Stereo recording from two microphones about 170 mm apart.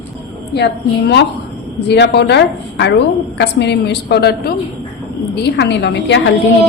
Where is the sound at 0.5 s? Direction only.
90° left; by 4.5 s 70° left (ahead or behind).